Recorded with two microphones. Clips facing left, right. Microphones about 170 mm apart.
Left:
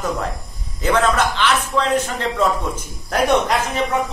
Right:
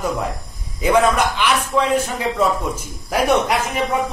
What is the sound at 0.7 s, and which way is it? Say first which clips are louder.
A man's voice: right 2 dB; 10° right (ahead or behind).